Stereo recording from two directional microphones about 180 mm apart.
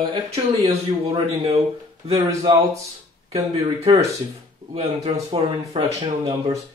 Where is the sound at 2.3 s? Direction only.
20° right (ahead or behind).